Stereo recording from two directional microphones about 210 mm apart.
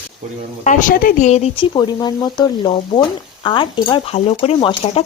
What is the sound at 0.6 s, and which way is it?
Speech, 35° left (ahead or behind).